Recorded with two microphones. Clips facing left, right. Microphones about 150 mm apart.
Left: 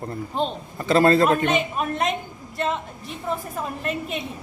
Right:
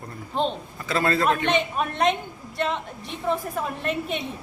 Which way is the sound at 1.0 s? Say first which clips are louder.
Left 5 dB; 35° left (ahead or behind).